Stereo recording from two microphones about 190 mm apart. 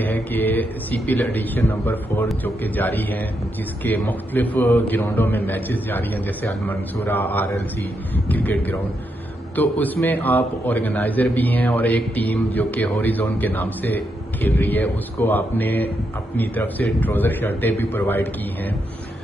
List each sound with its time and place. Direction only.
0.0 s a man's voice: 10° left (ahead or behind)